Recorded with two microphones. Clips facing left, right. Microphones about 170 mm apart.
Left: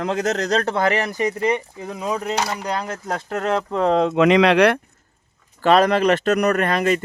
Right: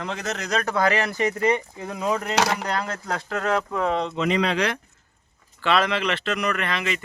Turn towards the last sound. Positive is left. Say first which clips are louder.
# left 8 dB
turn(degrees=45)  # may be behind; listen again after turning